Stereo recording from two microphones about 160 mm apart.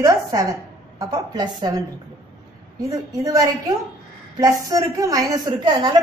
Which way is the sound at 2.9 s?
20° right (ahead or behind).